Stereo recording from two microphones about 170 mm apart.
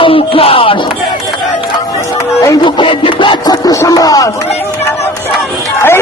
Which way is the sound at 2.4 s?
20° left (ahead or behind).